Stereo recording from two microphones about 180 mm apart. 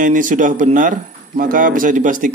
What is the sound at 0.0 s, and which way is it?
A man's voice, 45° right (ahead or behind).